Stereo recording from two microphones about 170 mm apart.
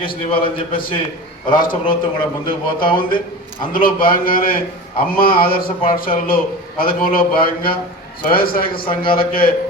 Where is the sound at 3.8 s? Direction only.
55° left (ahead or behind).